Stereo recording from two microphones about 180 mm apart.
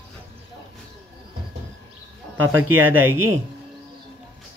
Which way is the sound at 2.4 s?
10° right (ahead or behind).